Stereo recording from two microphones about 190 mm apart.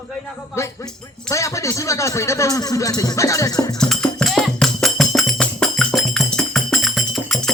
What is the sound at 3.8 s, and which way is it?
Music, 5° left (ahead or behind).